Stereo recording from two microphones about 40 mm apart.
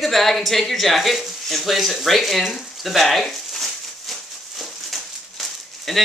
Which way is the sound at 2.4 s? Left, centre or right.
Centre.